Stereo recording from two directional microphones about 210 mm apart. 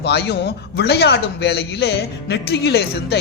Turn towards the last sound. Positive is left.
turn(degrees=50)  # may be behind; listen again after turning